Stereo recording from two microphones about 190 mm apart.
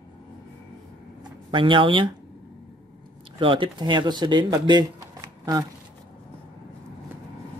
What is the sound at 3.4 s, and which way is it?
Speech, 25° right (ahead or behind).